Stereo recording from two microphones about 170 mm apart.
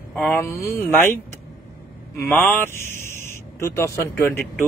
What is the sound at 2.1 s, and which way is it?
Speech, 15° left (ahead or behind).